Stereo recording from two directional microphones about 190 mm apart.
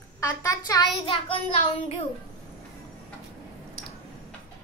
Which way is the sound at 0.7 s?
25° left (ahead or behind).